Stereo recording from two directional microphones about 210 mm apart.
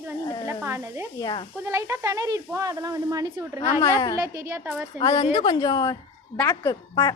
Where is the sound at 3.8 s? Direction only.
15° left (ahead or behind).